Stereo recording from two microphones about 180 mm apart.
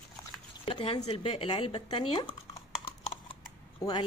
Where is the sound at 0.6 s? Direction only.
30° left (ahead or behind).